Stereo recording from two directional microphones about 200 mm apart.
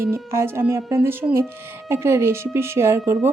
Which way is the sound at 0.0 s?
10° right (ahead or behind).